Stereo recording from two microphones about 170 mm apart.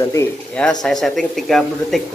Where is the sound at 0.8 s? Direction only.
Centre (ahead or behind).